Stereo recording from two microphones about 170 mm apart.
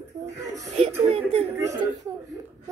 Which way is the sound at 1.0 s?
35° right (ahead or behind).